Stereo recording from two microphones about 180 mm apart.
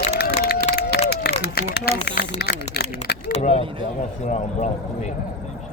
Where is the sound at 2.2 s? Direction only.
65° left (ahead or behind).